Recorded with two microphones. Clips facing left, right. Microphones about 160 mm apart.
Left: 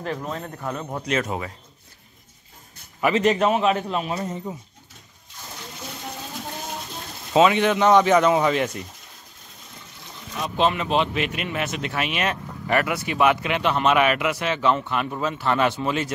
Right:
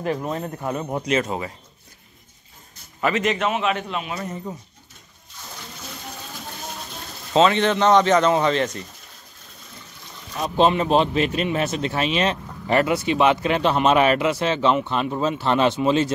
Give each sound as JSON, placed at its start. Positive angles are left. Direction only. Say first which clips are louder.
{"t": 0.0, "sound": "speech", "louder": "right 4 dB", "side_deg": -15}
{"t": 1.1, "sound": "speech", "louder": "right 2 dB", "side_deg": 0}
{"t": 3.2, "sound": "a man's voice", "louder": "left 6 dB", "side_deg": 35}
{"t": 7.3, "sound": "speech", "louder": "even", "side_deg": 10}
{"t": 10.4, "sound": "speech", "louder": "right 4 dB", "side_deg": -35}